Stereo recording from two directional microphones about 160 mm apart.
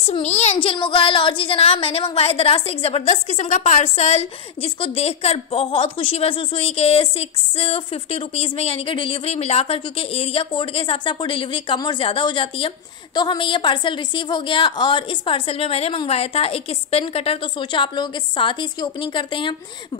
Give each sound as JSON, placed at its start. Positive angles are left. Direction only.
{"t": 0.1, "sound": "a woman's voice", "side_deg": 45}